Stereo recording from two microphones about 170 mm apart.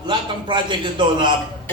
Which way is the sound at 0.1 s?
25° right (ahead or behind).